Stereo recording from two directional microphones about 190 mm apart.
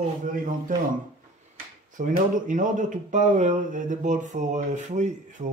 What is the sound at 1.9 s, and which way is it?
A man's voice, 45° right (ahead or behind).